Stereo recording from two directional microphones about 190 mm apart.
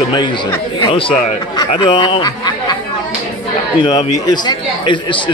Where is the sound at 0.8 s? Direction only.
30° left (ahead or behind).